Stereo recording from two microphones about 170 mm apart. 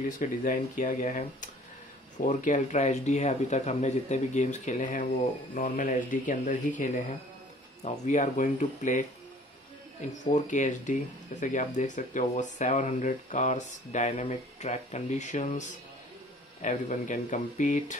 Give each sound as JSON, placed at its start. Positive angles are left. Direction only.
{"t": 0.2, "sound": "speech", "side_deg": 50}
{"t": 7.8, "sound": "speech", "side_deg": 45}
{"t": 10.3, "sound": "speech", "side_deg": 45}
{"t": 16.6, "sound": "speech", "side_deg": 50}